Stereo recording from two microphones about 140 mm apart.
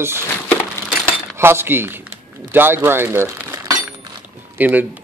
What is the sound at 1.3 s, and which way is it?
Speech, 15° right (ahead or behind).